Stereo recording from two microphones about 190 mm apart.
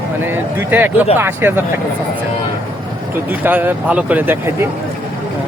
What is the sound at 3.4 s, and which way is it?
Speech, 10° right (ahead or behind).